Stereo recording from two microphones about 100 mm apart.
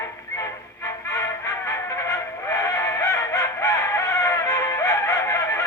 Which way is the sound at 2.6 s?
30° left (ahead or behind).